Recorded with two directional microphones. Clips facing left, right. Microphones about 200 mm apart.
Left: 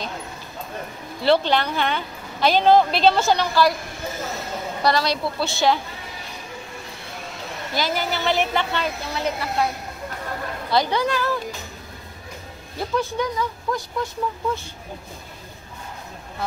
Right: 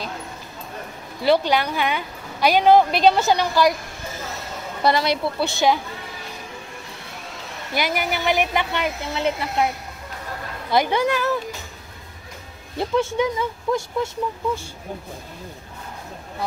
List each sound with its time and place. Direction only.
1.2 s a woman's voice: 10° right (ahead or behind)
4.8 s speech: 20° right (ahead or behind)
7.7 s a woman's voice: 15° right (ahead or behind)
10.7 s a woman's voice: 20° right (ahead or behind)
12.7 s speech: 25° right (ahead or behind)